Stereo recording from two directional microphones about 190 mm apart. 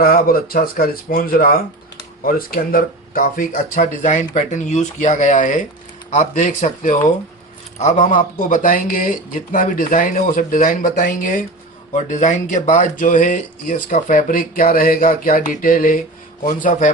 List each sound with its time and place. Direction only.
0.0 s speech: 50° left (ahead or behind)